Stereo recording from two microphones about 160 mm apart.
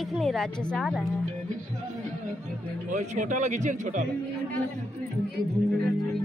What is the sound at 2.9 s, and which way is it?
Speech, 50° right (ahead or behind).